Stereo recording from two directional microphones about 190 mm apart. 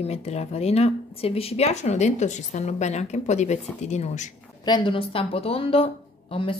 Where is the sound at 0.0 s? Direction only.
35° left (ahead or behind).